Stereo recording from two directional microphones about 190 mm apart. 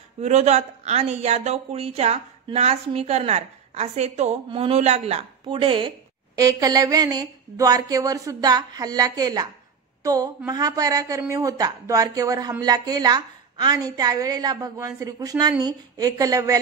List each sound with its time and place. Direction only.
0.2 s a woman's voice: 35° right (ahead or behind); by 16.6 s 20° right (ahead or behind)